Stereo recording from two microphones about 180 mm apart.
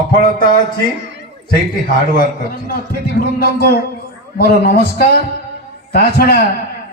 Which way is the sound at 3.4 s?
60° left (ahead or behind).